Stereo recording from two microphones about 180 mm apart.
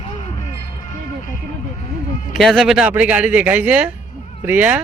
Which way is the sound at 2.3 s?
Centre (ahead or behind).